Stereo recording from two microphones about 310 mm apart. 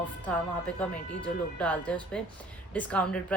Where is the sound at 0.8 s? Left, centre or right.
Centre.